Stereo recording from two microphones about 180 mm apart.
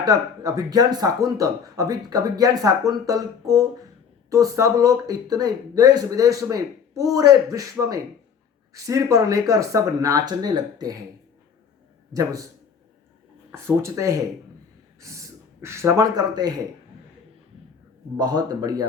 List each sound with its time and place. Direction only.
0.0 s speech: 20° right (ahead or behind)
12.1 s speech: 20° right (ahead or behind)
13.5 s speech: 15° right (ahead or behind)
15.6 s speech: 15° right (ahead or behind)
18.2 s speech: 20° right (ahead or behind)